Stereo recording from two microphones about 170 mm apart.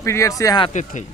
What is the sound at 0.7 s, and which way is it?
Speech, 45° left (ahead or behind).